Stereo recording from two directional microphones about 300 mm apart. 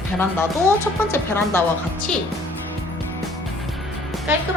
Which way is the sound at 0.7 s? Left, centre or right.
Centre.